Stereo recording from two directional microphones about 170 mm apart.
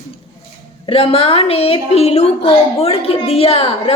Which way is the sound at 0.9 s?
35° left (ahead or behind).